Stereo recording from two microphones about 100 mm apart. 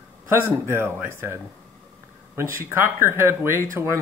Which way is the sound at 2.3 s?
25° right (ahead or behind).